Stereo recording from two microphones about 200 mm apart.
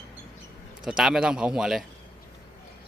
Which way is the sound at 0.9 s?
5° right (ahead or behind).